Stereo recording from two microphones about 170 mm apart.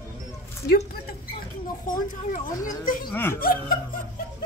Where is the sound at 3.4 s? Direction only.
60° left (ahead or behind).